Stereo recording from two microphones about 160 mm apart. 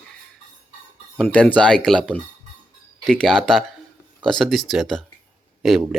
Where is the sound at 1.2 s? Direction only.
10° left (ahead or behind).